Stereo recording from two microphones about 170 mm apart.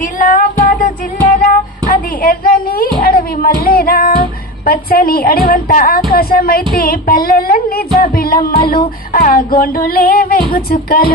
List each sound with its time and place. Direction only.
0.0 s music: 50° left (ahead or behind)
1.5 s a sound: 50° left (ahead or behind)
3.0 s child singing: 60° left (ahead or behind)
4.6 s female singing: 60° left (ahead or behind)